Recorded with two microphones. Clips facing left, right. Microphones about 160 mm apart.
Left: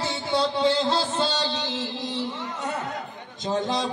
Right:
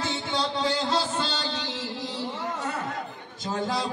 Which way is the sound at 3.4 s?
20° left (ahead or behind).